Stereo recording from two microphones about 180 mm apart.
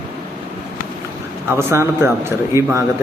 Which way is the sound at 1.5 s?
15° right (ahead or behind).